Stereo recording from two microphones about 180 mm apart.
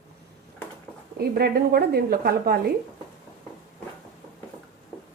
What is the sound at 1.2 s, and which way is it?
Speech, 60° right (ahead or behind).